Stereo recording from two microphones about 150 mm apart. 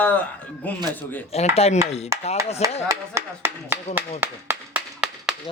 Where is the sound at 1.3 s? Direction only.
45° left (ahead or behind).